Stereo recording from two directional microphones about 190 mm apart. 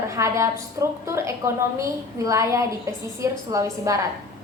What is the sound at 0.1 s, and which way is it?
A woman's voice, 15° right (ahead or behind).